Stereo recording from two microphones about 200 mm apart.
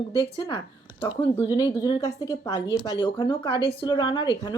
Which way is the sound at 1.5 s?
20° left (ahead or behind).